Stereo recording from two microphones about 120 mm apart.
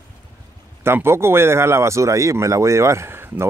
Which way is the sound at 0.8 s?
20° right (ahead or behind).